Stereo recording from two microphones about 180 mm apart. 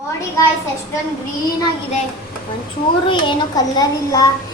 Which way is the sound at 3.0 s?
25° left (ahead or behind).